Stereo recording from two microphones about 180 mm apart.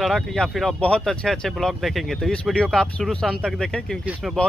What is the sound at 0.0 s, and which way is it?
Speech, centre (ahead or behind).